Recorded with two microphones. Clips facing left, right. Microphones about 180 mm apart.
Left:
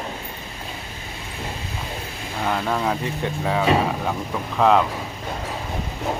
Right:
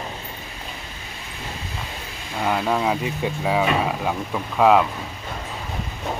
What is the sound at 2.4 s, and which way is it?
Speech, 5° right (ahead or behind).